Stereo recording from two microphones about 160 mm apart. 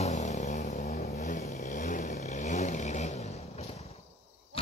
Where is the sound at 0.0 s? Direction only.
45° left (ahead or behind).